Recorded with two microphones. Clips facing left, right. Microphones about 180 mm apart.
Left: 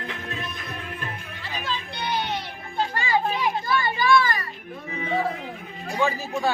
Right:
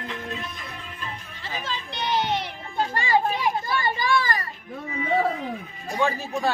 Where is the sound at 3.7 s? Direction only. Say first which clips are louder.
Left 7 dB; 35° right (ahead or behind).